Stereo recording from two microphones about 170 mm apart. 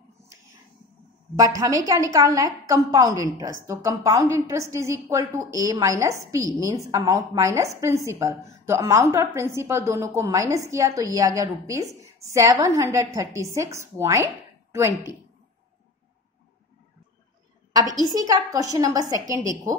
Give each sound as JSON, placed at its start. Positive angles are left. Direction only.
{"t": 1.3, "sound": "a woman's voice", "side_deg": -20}
{"t": 18.0, "sound": "a woman's voice", "side_deg": -20}